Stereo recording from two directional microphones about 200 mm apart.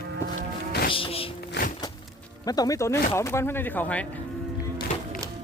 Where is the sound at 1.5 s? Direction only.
45° left (ahead or behind).